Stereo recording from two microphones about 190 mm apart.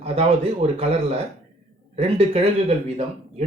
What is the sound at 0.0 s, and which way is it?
Speech, 35° right (ahead or behind).